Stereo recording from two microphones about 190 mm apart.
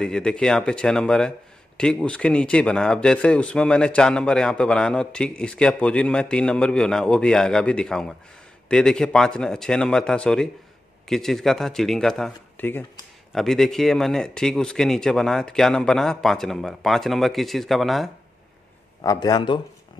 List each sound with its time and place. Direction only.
0.0 s speech: 5° left (ahead or behind)
18.9 s a man's voice: 20° left (ahead or behind)